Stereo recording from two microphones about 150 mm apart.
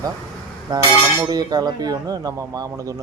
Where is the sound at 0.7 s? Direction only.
25° right (ahead or behind).